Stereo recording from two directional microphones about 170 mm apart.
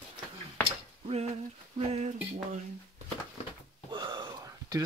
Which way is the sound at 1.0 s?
40° right (ahead or behind).